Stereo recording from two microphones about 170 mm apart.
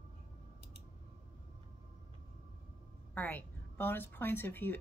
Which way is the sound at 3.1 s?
10° left (ahead or behind).